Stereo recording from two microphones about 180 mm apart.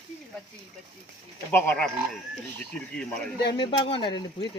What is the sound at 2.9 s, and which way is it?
Speech, 5° left (ahead or behind).